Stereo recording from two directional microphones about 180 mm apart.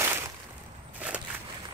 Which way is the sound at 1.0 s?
5° right (ahead or behind).